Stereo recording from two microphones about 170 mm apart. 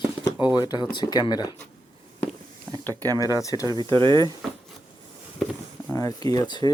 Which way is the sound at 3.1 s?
20° left (ahead or behind).